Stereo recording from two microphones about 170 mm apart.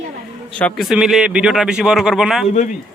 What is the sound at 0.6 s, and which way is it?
Speech, 5° left (ahead or behind).